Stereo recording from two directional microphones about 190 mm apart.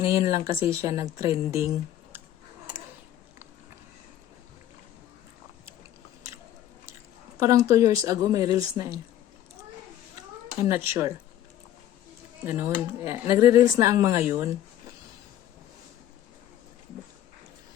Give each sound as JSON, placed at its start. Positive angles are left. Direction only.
{"t": 0.0, "sound": "speech", "side_deg": -15}
{"t": 7.3, "sound": "speech", "side_deg": -20}
{"t": 10.6, "sound": "speech", "side_deg": -15}
{"t": 12.5, "sound": "speech", "side_deg": -10}